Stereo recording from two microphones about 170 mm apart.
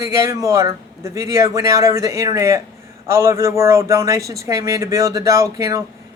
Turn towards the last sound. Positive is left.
turn(degrees=-20)  # may be behind; listen again after turning